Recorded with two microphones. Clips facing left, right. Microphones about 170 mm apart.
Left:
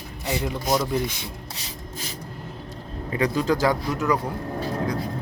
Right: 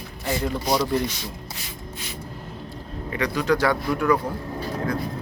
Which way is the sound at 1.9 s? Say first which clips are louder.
Left 2 dB; 40° left (ahead or behind).